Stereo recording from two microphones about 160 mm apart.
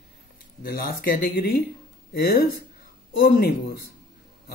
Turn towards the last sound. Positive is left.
turn(degrees=70)  # may be behind; listen again after turning